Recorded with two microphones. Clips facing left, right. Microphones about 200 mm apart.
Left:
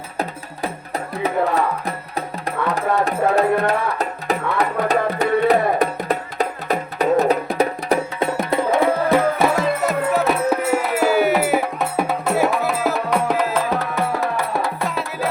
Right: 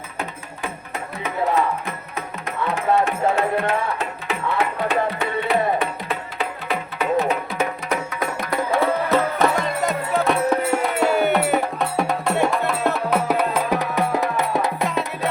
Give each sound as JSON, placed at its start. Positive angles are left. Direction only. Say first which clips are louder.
{"t": 0.2, "sound": "music", "louder": "left 5 dB", "side_deg": 35}
{"t": 2.7, "sound": "music", "louder": "right 1 dB", "side_deg": 35}
{"t": 14.8, "sound": "music", "louder": "even", "side_deg": 0}